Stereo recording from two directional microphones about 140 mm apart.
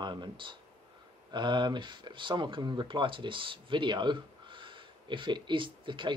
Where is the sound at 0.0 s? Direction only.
35° right (ahead or behind).